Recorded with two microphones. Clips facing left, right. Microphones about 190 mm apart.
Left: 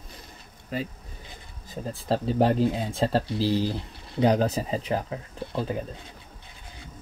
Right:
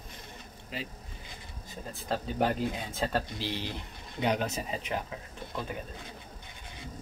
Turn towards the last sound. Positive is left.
turn(degrees=30)  # may be behind; listen again after turning